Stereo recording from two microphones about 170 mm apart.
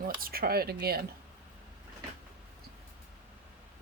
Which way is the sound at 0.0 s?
60° right (ahead or behind).